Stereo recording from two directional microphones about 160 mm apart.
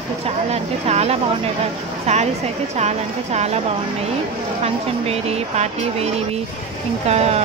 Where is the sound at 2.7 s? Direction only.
45° right (ahead or behind).